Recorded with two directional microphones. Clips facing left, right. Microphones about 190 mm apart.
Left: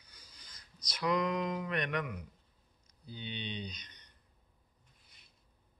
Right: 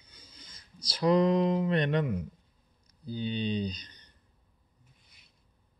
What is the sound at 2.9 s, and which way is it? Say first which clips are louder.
Speech: right 11 dB; 35° right (ahead or behind).